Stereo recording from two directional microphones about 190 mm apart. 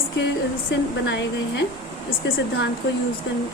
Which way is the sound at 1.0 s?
70° left (ahead or behind).